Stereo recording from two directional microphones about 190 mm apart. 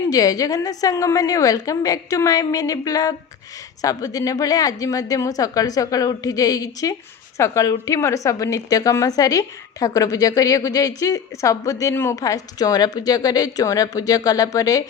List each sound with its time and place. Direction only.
0.1 s a woman's voice: 20° left (ahead or behind)